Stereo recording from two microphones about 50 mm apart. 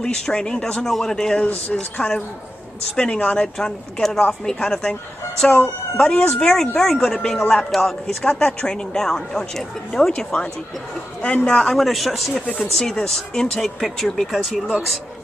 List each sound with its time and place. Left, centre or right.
0.0 s speech: centre
1.7 s a woman's voice: left
3.5 s a woman's voice: centre
11.8 s speech: centre